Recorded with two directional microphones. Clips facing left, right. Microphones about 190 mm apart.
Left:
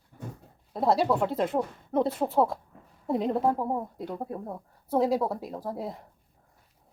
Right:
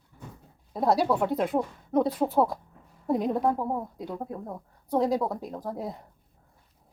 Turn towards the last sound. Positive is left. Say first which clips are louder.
# even
turn(degrees=0)  # may be behind; listen again after turning